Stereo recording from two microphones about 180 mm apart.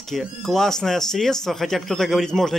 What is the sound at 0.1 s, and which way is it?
Speech, centre (ahead or behind).